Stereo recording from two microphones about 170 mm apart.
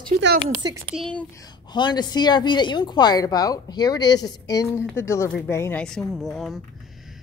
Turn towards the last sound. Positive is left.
turn(degrees=0)  # may be behind; listen again after turning